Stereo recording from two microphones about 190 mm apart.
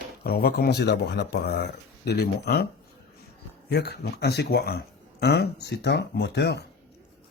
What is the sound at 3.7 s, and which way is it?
Speech, 60° left (ahead or behind).